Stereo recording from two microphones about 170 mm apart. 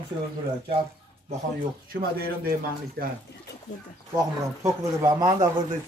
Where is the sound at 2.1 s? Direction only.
65° right (ahead or behind).